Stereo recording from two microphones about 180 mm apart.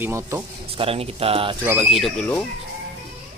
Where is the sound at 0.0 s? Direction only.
15° right (ahead or behind).